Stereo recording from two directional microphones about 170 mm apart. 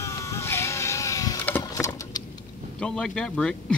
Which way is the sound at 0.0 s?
15° left (ahead or behind).